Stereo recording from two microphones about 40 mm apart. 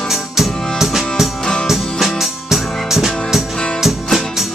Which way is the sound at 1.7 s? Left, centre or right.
Centre.